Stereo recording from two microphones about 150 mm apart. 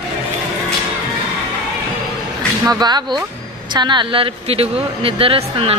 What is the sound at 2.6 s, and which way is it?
Speech, 25° right (ahead or behind).